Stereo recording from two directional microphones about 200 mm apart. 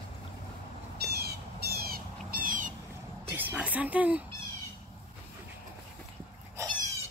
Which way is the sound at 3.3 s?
10° right (ahead or behind).